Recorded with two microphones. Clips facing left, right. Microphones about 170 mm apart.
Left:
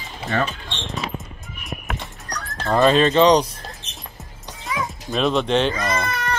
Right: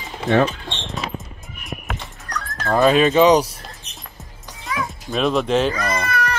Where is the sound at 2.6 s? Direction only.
Centre (ahead or behind).